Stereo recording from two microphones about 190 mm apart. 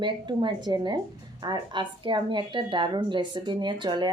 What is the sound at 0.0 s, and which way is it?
Speech, 25° right (ahead or behind).